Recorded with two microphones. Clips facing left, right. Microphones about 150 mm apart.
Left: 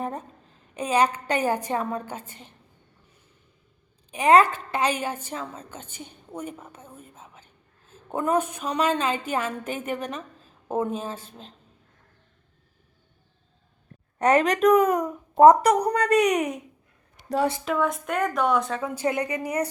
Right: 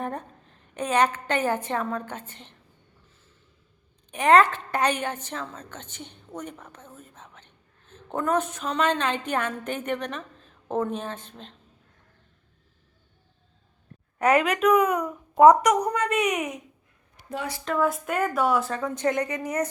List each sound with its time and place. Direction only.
0.0 s a sound: 5° left (ahead or behind)
1.1 s a woman's voice: 10° left (ahead or behind)
4.1 s a woman's voice: 10° left (ahead or behind)
14.3 s a woman's voice: 40° left (ahead or behind)
17.7 s speech: centre (ahead or behind)
18.8 s a woman's voice: 10° left (ahead or behind)